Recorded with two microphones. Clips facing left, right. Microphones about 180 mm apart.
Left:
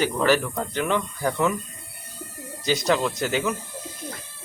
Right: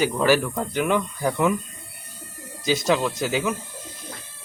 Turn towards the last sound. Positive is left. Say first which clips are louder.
# right 1 dB
turn(degrees=-10)  # may be behind; listen again after turning